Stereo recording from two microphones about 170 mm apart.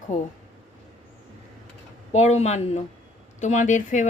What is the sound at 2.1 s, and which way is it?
A woman's voice, 40° left (ahead or behind).